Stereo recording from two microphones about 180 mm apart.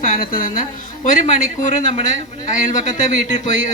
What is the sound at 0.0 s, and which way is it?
A woman's voice, 50° left (ahead or behind).